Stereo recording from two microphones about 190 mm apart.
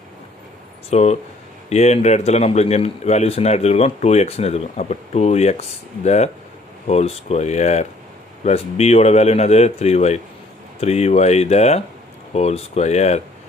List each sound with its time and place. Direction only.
0.8 s speech: 35° left (ahead or behind)